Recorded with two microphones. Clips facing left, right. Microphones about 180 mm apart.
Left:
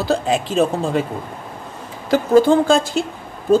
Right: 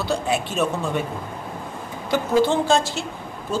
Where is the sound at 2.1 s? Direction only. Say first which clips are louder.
Left 6 dB; 45° left (ahead or behind).